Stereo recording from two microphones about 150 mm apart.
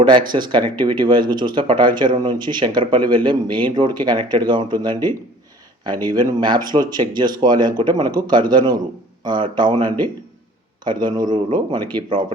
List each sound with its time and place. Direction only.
0.0 s speech: 30° right (ahead or behind)
6.1 s speech: 30° right (ahead or behind)
10.8 s speech: 30° right (ahead or behind)